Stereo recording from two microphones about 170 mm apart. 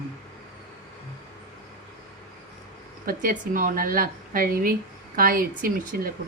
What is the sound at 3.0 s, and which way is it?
Speech, 55° right (ahead or behind).